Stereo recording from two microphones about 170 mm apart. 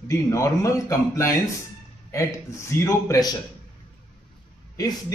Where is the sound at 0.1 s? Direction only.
20° left (ahead or behind).